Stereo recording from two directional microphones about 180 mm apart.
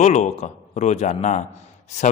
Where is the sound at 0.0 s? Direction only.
40° left (ahead or behind).